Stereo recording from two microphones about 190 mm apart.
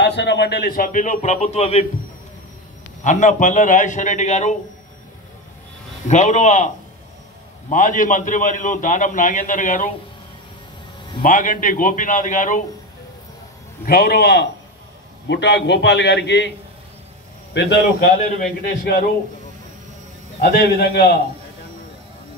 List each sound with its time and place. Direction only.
0.0 s a man's voice: 65° left (ahead or behind); by 1.9 s 35° left (ahead or behind)
3.0 s a man's voice: 40° left (ahead or behind)
6.0 s a man's voice: 40° left (ahead or behind)
7.7 s a man's voice: 45° left (ahead or behind)
11.2 s a man's voice: 45° left (ahead or behind)
13.8 s a man's voice: 55° left (ahead or behind)
17.6 s a man's voice: 65° left (ahead or behind)
20.3 s a man's voice: 55° left (ahead or behind)